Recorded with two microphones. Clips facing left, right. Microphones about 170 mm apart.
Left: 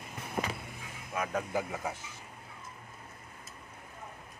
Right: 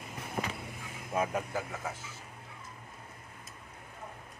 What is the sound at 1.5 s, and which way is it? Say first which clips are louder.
Speech: left 3 dB; 15° left (ahead or behind).